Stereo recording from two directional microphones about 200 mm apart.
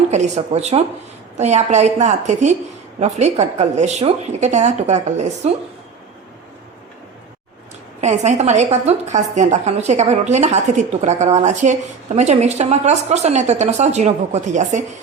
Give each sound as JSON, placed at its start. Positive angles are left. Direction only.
{"t": 0.1, "sound": "a woman's voice", "side_deg": -35}
{"t": 8.0, "sound": "a woman's voice", "side_deg": -35}